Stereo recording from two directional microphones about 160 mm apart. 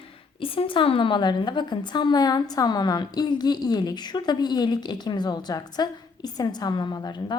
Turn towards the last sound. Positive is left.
turn(degrees=25)  # may be behind; listen again after turning